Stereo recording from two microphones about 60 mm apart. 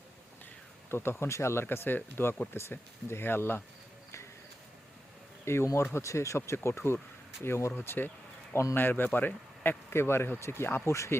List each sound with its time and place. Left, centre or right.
0.9 s speech: left
1.7 s speech: left
5.5 s speech: left
10.8 s speech: left